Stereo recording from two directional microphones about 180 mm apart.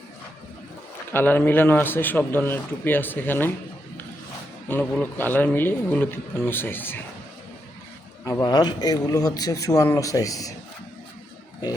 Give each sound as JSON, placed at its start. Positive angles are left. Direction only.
{"t": 1.1, "sound": "a man's voice", "side_deg": 10}
{"t": 4.7, "sound": "a man's voice", "side_deg": 10}
{"t": 8.2, "sound": "a man's voice", "side_deg": 20}